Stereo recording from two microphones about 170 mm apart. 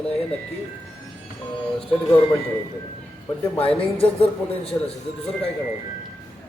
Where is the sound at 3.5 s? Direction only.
10° left (ahead or behind).